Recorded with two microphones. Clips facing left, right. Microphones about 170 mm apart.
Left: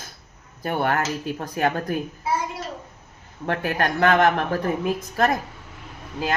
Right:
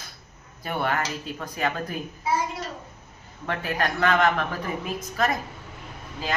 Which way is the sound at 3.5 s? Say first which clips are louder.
Left 3 dB; 60° left (ahead or behind).